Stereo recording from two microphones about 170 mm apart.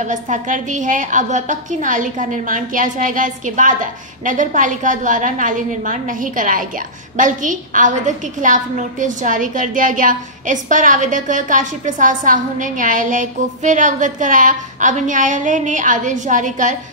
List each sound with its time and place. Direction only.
0.0 s a woman's voice: 45° right (ahead or behind)